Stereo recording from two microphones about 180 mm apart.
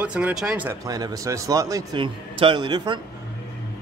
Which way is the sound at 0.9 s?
20° right (ahead or behind).